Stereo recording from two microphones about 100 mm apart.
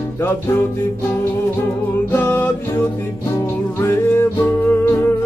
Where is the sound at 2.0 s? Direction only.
25° left (ahead or behind).